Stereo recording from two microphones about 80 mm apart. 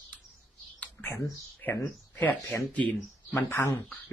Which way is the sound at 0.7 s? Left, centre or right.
Centre.